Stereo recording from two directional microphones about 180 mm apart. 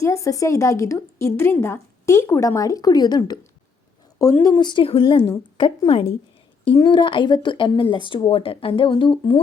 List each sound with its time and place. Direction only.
0.0 s a woman's voice: 15° left (ahead or behind)